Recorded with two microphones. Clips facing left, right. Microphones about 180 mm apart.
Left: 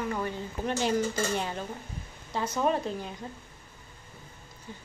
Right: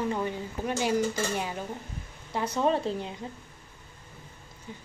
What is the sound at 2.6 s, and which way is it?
Speech, 25° right (ahead or behind).